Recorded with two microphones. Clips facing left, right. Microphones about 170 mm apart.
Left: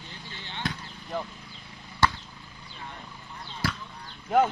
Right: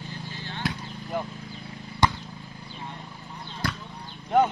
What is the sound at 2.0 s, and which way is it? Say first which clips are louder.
Chop: right 1 dB; 15° right (ahead or behind).